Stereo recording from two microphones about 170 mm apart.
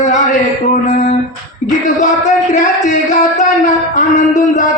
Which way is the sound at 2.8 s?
45° left (ahead or behind).